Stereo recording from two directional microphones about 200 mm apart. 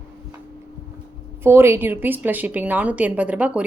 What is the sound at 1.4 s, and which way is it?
A woman's voice, 10° right (ahead or behind).